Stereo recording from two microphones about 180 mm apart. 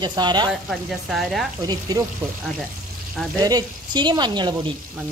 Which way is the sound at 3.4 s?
25° right (ahead or behind).